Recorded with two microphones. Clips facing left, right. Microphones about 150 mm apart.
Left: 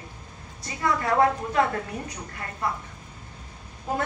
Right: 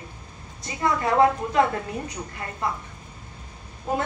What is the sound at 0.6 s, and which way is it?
A woman's voice, 20° right (ahead or behind).